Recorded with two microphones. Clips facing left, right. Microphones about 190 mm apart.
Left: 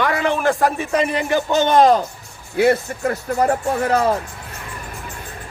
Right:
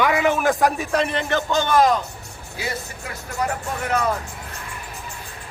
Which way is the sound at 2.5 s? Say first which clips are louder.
Left 14 dB; 60° left (ahead or behind).